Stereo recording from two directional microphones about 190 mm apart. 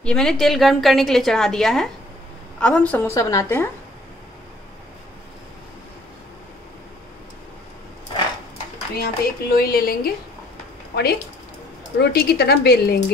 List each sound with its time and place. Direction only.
0.0 s a woman's voice: 5° left (ahead or behind)
8.9 s speech: 55° left (ahead or behind)